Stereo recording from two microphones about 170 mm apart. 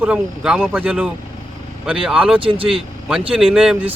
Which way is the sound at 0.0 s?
5° right (ahead or behind).